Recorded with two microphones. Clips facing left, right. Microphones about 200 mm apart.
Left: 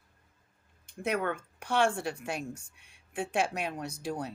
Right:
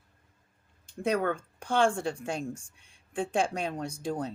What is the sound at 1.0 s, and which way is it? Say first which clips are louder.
Speech: right 3 dB; 35° right (ahead or behind).